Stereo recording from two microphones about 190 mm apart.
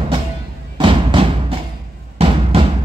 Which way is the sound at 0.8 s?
25° right (ahead or behind).